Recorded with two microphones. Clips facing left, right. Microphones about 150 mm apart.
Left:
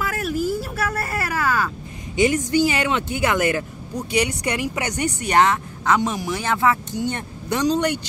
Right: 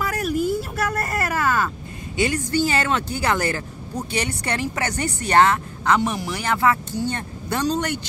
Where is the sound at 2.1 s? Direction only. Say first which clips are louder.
Left 4 dB; 20° left (ahead or behind).